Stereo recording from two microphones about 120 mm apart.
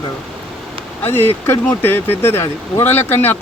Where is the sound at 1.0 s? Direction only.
15° left (ahead or behind).